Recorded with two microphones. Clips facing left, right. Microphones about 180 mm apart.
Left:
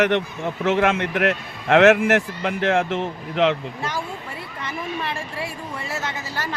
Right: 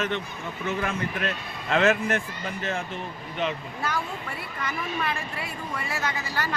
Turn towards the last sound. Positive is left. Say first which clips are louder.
# left 1 dB
turn(degrees=25)  # may be behind; listen again after turning